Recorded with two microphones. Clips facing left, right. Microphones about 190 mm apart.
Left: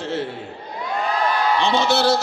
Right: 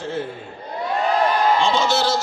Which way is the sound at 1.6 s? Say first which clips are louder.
Left 1 dB; 65° left (ahead or behind).